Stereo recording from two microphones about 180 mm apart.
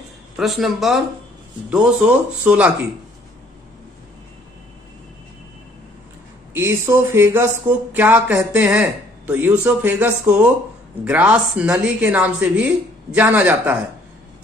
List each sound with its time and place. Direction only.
0.4 s a man's voice: centre (ahead or behind)
2.4 s speech: 5° right (ahead or behind)
6.5 s speech: 10° right (ahead or behind)